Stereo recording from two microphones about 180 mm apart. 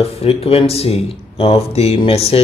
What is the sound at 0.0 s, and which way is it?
Speech, 35° left (ahead or behind).